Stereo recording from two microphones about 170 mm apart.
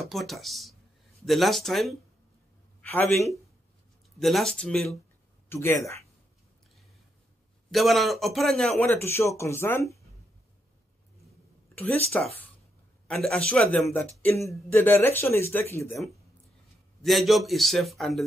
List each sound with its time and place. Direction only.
0.0 s a man's voice: centre (ahead or behind)
4.2 s a man's voice: centre (ahead or behind); by 6.0 s 15° left (ahead or behind)
7.7 s a man's voice: centre (ahead or behind)
8.8 s speech: 15° left (ahead or behind)
11.7 s speech: 5° left (ahead or behind)
17.0 s a man's voice: centre (ahead or behind)